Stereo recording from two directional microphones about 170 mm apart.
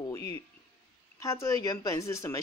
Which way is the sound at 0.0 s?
20° left (ahead or behind).